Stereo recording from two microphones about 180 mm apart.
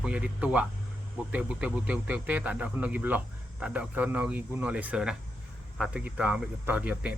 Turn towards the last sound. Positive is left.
turn(degrees=-5)  # may be behind; listen again after turning